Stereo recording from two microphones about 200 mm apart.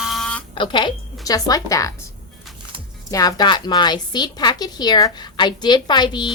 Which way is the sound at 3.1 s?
20° left (ahead or behind).